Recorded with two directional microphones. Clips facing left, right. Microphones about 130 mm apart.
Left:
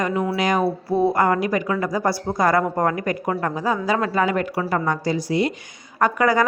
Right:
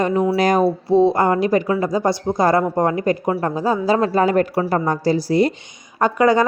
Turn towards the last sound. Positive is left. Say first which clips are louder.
# right 3 dB
turn(degrees=-25)  # may be behind; listen again after turning